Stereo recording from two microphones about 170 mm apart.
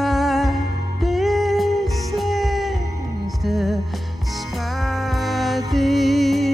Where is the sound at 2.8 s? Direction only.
20° right (ahead or behind).